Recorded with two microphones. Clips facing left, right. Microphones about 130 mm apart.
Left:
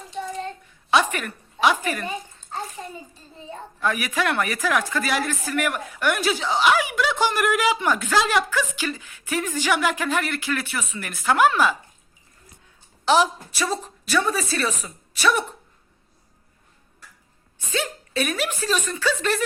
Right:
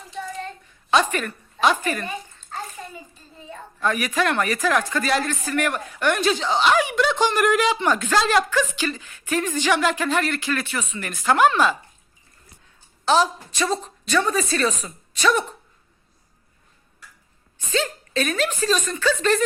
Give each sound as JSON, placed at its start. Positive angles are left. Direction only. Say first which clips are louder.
{"t": 0.9, "sound": "speech", "louder": "right 1 dB", "side_deg": 10}
{"t": 2.8, "sound": "a sound", "louder": "left 2 dB", "side_deg": 25}
{"t": 3.8, "sound": "speech", "louder": "right 2 dB", "side_deg": 10}
{"t": 13.1, "sound": "speech", "louder": "even", "side_deg": 15}
{"t": 17.7, "sound": "speech", "louder": "right 3 dB", "side_deg": 10}